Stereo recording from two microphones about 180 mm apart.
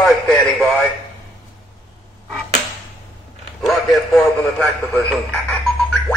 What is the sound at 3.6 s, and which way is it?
Radio, centre (ahead or behind).